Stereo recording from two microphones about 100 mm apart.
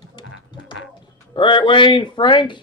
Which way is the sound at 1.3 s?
55° left (ahead or behind).